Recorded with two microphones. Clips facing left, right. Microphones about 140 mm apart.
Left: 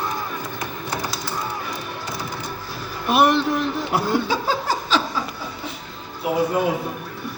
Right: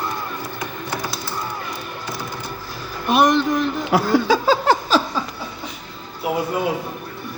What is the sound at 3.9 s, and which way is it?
Speech, 90° right.